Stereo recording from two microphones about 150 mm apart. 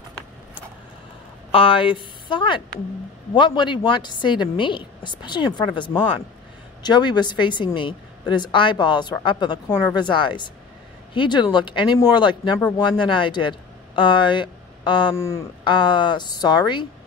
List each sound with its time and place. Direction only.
1.5 s a woman's voice: 35° left (ahead or behind)
6.8 s a woman's voice: 30° left (ahead or behind)
15.1 s speech: 20° left (ahead or behind)
15.6 s a woman's voice: 30° left (ahead or behind)